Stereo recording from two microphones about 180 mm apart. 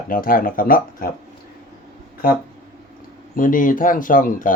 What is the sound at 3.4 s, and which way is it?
Speech, 50° left (ahead or behind).